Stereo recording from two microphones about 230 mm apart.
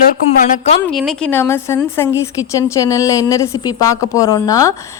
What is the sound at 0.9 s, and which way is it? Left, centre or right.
A woman's voice, centre.